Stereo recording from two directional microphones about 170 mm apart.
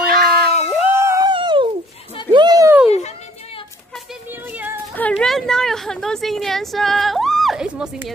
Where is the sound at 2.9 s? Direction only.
40° left (ahead or behind).